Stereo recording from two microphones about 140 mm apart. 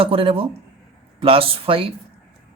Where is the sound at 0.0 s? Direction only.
40° right (ahead or behind).